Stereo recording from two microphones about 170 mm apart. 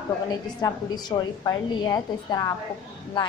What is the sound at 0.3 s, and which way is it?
A woman's voice, 25° left (ahead or behind).